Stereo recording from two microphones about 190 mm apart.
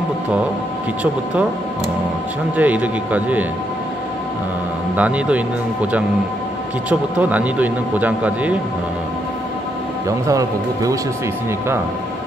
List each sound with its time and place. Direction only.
2.5 s speech: 10° right (ahead or behind)
4.9 s speech: 5° right (ahead or behind)
10.0 s speech: 15° right (ahead or behind)